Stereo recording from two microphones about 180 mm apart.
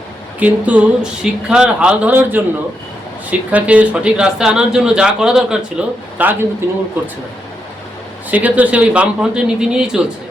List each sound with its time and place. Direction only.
0.3 s speech: 10° right (ahead or behind)
8.3 s speech: 10° right (ahead or behind)